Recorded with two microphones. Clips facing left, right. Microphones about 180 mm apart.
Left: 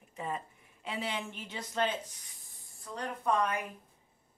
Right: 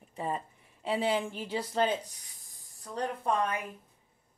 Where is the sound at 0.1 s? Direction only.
35° right (ahead or behind).